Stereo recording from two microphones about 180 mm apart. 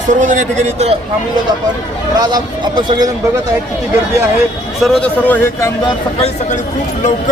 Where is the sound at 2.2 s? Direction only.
20° right (ahead or behind).